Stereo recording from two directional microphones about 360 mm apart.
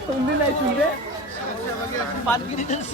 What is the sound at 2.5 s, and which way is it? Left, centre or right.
Speech, centre.